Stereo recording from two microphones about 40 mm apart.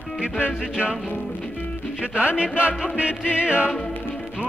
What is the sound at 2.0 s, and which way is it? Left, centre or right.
Music, right.